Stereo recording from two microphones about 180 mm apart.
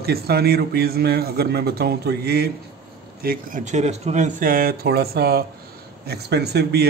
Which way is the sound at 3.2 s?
50° right (ahead or behind).